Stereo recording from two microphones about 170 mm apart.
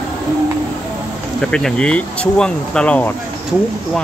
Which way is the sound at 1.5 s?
5° left (ahead or behind).